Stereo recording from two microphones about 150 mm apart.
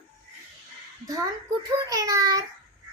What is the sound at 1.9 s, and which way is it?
Speech, 25° right (ahead or behind).